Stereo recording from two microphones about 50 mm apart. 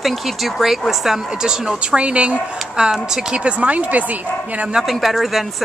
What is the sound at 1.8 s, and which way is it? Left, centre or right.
Speech, right.